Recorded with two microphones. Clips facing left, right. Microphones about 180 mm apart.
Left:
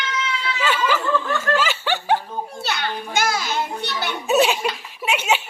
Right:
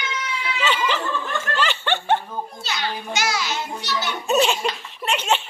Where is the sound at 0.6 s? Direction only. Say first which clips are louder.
Left 2 dB; 5° left (ahead or behind).